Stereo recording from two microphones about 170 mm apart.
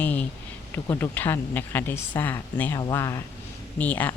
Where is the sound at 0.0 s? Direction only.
10° left (ahead or behind).